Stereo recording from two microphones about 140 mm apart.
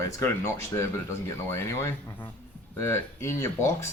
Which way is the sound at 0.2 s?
20° left (ahead or behind).